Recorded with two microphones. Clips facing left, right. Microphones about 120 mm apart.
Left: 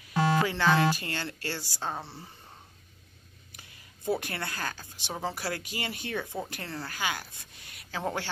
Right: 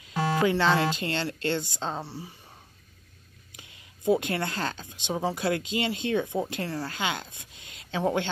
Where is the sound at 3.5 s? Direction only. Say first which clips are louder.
Right 2 dB; 20° right (ahead or behind).